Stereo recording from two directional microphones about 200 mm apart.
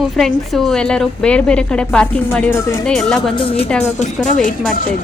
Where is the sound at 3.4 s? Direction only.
30° left (ahead or behind).